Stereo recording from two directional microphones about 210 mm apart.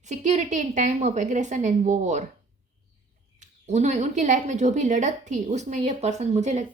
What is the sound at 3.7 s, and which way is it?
A woman's voice, 35° right (ahead or behind).